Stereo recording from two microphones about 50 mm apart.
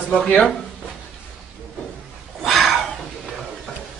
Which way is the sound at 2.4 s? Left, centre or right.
Centre.